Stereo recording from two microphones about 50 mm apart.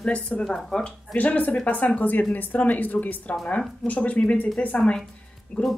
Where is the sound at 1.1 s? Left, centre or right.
Left.